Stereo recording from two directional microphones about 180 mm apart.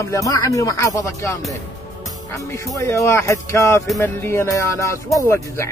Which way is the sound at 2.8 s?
15° left (ahead or behind).